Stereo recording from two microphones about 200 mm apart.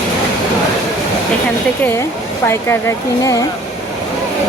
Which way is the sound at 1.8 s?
10° left (ahead or behind).